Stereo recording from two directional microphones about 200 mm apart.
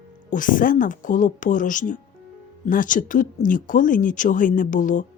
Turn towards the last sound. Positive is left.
turn(degrees=40)  # may be behind; listen again after turning